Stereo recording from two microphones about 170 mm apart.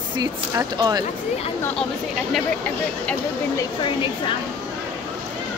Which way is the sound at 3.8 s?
30° left (ahead or behind).